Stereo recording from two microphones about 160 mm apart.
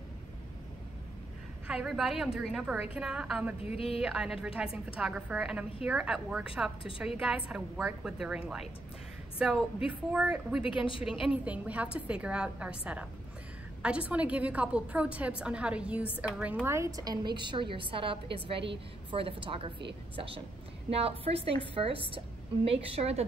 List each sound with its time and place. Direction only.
1.7 s a woman's voice: 5° right (ahead or behind)
3.7 s speech: 35° left (ahead or behind)
4.0 s a woman's voice: 5° right (ahead or behind)
16.6 s a woman's voice: 20° right (ahead or behind); by 23.2 s 40° right (ahead or behind)